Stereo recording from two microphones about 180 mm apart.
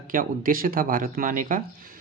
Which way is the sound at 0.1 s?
50° right (ahead or behind).